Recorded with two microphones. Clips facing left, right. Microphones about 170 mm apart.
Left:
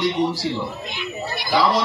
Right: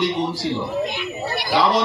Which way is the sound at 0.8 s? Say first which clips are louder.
Right 3 dB; 65° right (ahead or behind).